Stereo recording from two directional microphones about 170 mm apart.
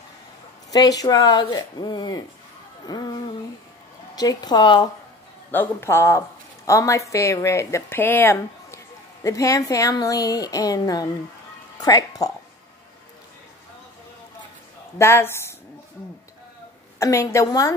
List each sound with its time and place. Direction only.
0.7 s a woman's voice: 20° left (ahead or behind)
5.5 s a woman's voice: 10° left (ahead or behind)
15.0 s speech: 15° left (ahead or behind)
17.0 s a woman's voice: 20° left (ahead or behind)